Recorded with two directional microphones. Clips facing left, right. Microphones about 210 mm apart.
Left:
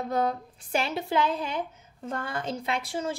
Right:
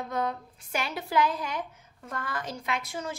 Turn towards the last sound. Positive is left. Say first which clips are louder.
# left 3 dB
turn(degrees=30)  # may be behind; listen again after turning